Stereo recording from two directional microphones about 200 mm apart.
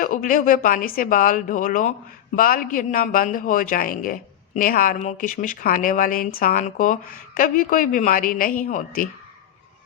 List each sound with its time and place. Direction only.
0.0 s a man's voice: 45° left (ahead or behind)